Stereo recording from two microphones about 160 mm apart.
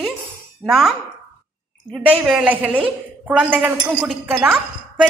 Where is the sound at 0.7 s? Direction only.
Centre (ahead or behind).